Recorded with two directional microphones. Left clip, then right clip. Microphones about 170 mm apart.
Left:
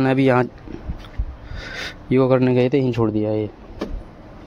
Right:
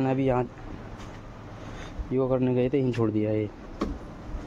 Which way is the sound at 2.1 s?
55° left (ahead or behind).